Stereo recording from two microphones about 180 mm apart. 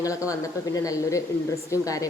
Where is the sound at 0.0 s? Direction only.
20° left (ahead or behind).